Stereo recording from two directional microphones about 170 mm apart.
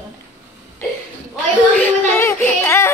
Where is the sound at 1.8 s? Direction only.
15° left (ahead or behind).